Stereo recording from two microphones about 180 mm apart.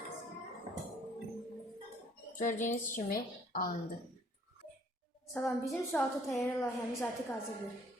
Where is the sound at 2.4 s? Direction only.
45° left (ahead or behind).